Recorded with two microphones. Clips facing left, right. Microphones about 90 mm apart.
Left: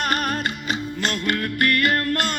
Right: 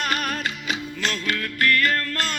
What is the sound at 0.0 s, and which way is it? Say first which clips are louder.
Music: left 2 dB; 45° left (ahead or behind).